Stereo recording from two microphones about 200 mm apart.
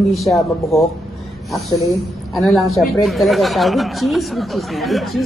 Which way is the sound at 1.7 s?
15° left (ahead or behind).